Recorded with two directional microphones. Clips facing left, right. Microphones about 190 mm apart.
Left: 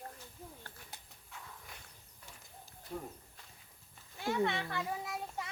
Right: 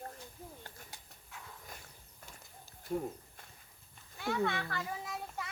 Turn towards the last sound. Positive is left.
turn(degrees=10)  # may be behind; listen again after turning